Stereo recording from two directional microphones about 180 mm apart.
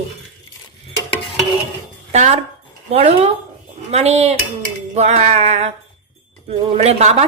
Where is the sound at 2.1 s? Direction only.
40° right (ahead or behind).